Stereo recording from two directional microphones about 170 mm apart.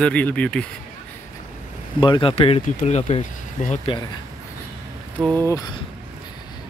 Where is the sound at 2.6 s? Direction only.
45° left (ahead or behind).